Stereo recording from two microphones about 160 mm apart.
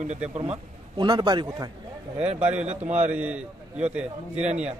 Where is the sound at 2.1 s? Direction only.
45° right (ahead or behind).